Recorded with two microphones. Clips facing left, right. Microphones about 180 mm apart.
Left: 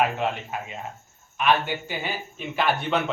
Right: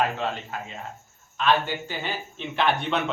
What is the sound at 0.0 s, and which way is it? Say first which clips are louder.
A man's voice: left 2 dB; 15° left (ahead or behind).